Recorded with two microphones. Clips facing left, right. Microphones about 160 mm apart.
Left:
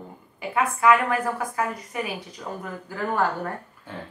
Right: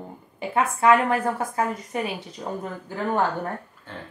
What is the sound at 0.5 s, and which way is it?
A woman's voice, 30° right (ahead or behind).